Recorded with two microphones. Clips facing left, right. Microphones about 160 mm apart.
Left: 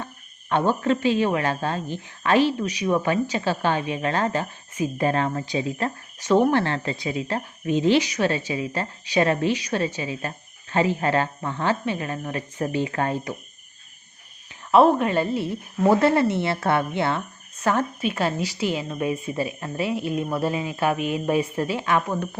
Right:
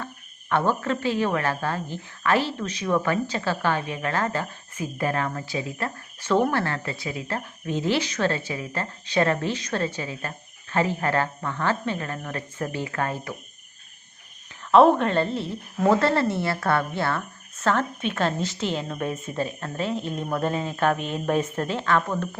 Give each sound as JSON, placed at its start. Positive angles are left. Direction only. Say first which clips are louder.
{"t": 0.5, "sound": "speech", "louder": "left 2 dB", "side_deg": 15}
{"t": 14.7, "sound": "speech", "louder": "even", "side_deg": 5}